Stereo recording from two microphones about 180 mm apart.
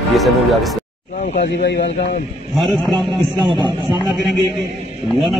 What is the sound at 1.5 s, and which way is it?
Speech, 70° left (ahead or behind).